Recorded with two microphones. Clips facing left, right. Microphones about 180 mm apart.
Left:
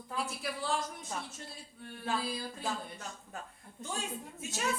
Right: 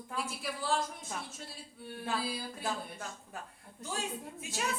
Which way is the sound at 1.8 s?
5° right (ahead or behind).